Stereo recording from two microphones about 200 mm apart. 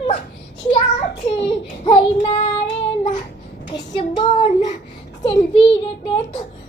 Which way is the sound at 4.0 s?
25° left (ahead or behind).